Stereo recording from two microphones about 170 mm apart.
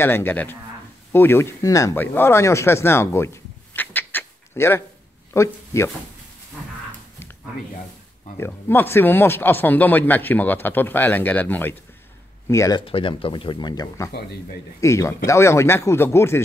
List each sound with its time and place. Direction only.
0.0 s speech: 10° left (ahead or behind)
3.7 s a sound: 10° left (ahead or behind)
5.3 s speech: 15° left (ahead or behind)
8.4 s speech: 10° left (ahead or behind)
12.8 s speech: 30° left (ahead or behind); by 16.4 s 15° left (ahead or behind)